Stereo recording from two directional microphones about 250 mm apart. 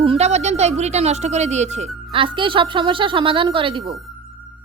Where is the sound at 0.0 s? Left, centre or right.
Right.